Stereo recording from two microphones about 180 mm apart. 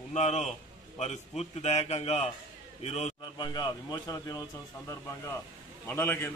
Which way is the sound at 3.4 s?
25° left (ahead or behind).